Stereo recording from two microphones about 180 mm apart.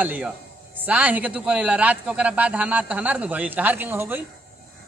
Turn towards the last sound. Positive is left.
turn(degrees=-10)  # may be behind; listen again after turning